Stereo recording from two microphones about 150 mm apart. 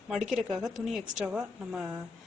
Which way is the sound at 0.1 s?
Centre (ahead or behind).